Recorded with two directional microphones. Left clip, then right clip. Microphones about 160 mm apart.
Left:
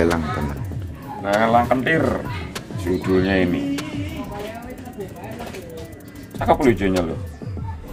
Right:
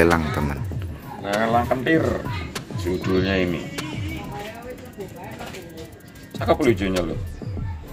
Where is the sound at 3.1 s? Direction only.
30° right (ahead or behind).